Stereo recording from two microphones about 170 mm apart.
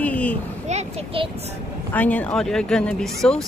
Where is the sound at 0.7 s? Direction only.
35° right (ahead or behind).